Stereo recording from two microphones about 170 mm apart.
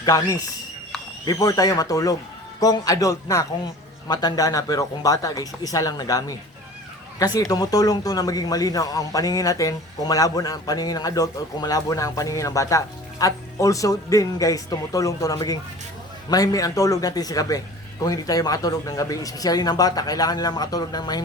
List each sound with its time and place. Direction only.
0.0 s speech: 20° left (ahead or behind)
7.3 s speech: 20° left (ahead or behind)